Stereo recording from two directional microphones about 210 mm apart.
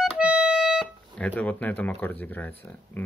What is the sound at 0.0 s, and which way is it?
Speech, 5° right (ahead or behind).